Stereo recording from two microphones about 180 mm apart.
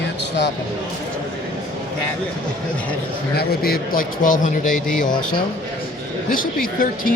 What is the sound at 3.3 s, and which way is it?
Speech, 55° left (ahead or behind).